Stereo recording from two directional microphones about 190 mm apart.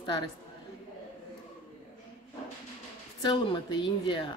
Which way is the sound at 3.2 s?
25° left (ahead or behind).